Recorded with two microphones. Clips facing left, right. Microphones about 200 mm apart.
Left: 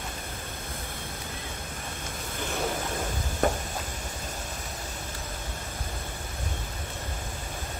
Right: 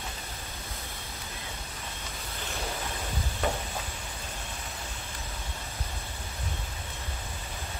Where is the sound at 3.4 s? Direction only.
45° left (ahead or behind).